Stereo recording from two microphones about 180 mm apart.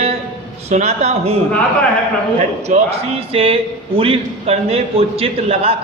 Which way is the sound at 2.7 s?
45° right (ahead or behind).